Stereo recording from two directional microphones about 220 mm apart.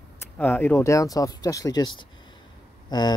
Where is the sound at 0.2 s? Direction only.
10° left (ahead or behind).